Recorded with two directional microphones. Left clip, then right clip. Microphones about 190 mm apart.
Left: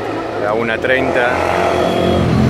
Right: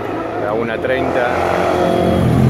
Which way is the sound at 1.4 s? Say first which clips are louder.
Left 1 dB; 55° right (ahead or behind).